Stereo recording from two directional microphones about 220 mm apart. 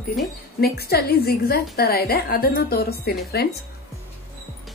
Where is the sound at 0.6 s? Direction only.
45° left (ahead or behind).